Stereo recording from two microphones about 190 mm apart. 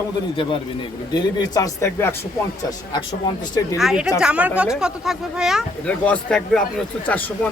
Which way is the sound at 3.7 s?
5° right (ahead or behind).